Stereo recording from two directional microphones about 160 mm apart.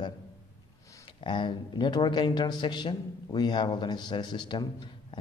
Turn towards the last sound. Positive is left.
turn(degrees=30)  # may be behind; listen again after turning